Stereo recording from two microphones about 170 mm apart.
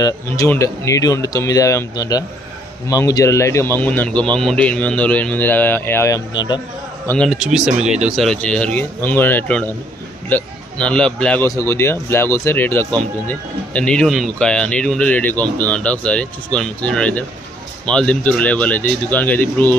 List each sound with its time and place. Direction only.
0.0 s speech: 20° left (ahead or behind)
7.1 s speech: centre (ahead or behind)
11.4 s speech: 15° left (ahead or behind)